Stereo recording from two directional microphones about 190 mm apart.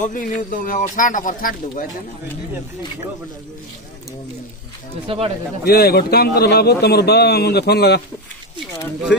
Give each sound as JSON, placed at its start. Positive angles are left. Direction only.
{"t": 0.0, "sound": "speech", "side_deg": 45}
{"t": 5.0, "sound": "speech", "side_deg": -30}
{"t": 5.6, "sound": "a man's voice", "side_deg": 55}